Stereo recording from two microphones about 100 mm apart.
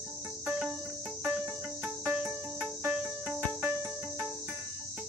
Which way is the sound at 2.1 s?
10° right (ahead or behind).